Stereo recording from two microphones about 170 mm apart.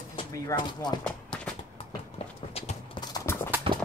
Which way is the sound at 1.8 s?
35° left (ahead or behind).